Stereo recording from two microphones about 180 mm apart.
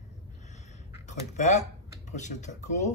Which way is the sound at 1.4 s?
40° left (ahead or behind).